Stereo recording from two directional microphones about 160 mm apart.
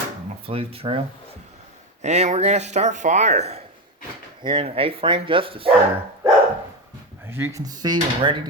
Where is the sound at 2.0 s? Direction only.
45° right (ahead or behind).